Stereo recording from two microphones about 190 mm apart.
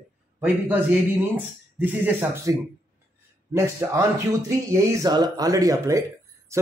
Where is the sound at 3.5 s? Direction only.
15° right (ahead or behind).